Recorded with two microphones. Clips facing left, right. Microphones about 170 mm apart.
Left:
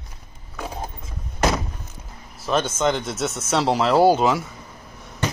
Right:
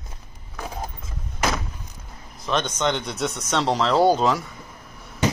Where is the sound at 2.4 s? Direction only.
5° left (ahead or behind).